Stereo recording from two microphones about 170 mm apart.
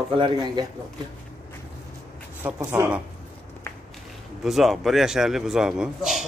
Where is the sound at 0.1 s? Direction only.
30° right (ahead or behind).